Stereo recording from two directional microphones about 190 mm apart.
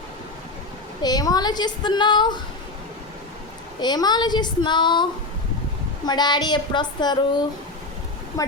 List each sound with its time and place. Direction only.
1.0 s a woman's voice: 20° left (ahead or behind)
3.8 s a woman's voice: 20° left (ahead or behind)
6.1 s a woman's voice: 20° left (ahead or behind)
8.4 s a woman's voice: 15° left (ahead or behind)